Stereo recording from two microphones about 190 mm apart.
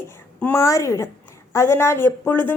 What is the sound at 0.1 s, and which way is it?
A woman's voice, 10° left (ahead or behind).